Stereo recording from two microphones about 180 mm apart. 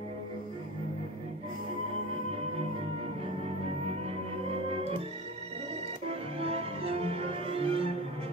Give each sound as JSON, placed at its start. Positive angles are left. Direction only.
{"t": 6.4, "sound": "music", "side_deg": -30}